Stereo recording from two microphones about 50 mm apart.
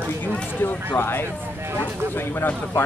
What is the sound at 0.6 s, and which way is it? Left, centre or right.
Speech, left.